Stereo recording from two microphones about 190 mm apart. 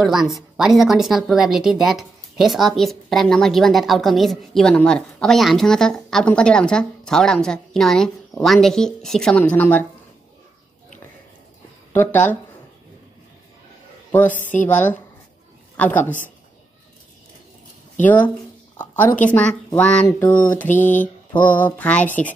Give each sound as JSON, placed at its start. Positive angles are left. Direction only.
{"t": 0.0, "sound": "a woman's voice", "side_deg": 0}
{"t": 11.9, "sound": "speech", "side_deg": 10}
{"t": 14.3, "sound": "a woman's voice", "side_deg": 40}
{"t": 14.7, "sound": "a woman's voice", "side_deg": 10}
{"t": 18.0, "sound": "speech", "side_deg": 10}